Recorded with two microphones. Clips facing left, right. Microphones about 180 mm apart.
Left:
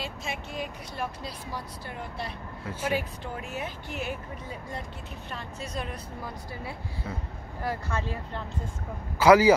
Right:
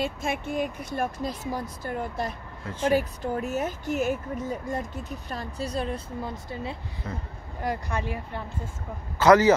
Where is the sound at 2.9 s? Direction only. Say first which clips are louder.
Right 6 dB; 40° right (ahead or behind); by 8.4 s 15° right (ahead or behind).